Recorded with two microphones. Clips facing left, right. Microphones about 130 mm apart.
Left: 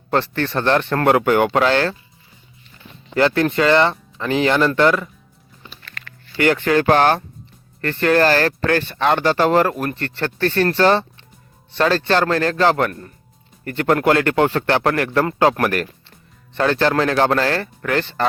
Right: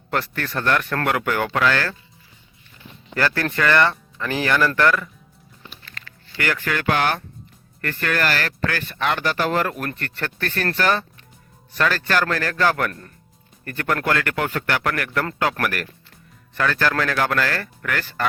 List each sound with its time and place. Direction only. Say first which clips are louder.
0.1 s speech: left 6 dB; 30° left (ahead or behind)
3.2 s speech: left 6 dB; 20° left (ahead or behind)
6.3 s speech: left 9 dB; 25° left (ahead or behind)
12.9 s speech: left 5 dB; 10° left (ahead or behind)
13.7 s speech: left 7 dB; 25° left (ahead or behind)